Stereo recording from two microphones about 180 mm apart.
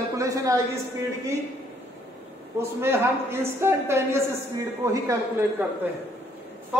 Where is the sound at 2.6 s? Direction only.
15° right (ahead or behind).